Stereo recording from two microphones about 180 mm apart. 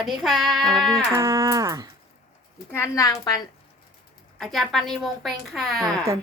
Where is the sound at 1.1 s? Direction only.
15° right (ahead or behind).